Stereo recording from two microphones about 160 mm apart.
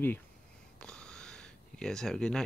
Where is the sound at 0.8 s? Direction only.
5° left (ahead or behind).